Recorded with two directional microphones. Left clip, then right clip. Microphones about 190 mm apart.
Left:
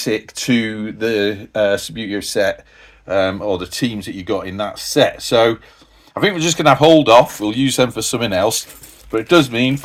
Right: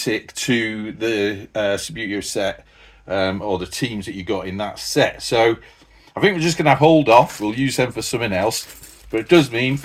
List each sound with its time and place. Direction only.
0.0 s speech: 30° left (ahead or behind)